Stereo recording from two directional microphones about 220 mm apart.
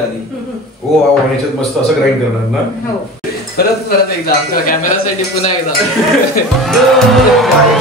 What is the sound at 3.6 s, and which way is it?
Speech, 45° left (ahead or behind).